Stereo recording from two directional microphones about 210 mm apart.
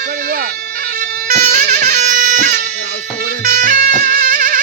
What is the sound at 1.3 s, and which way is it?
Music, 40° right (ahead or behind).